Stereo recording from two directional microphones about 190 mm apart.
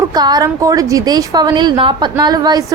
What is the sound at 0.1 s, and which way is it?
A woman's voice, 20° right (ahead or behind).